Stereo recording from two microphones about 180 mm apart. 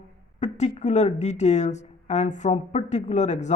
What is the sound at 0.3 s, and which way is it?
Speech, 40° left (ahead or behind).